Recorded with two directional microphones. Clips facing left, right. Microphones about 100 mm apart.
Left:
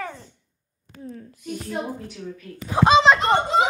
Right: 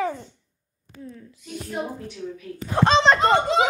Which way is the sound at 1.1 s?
45° left (ahead or behind).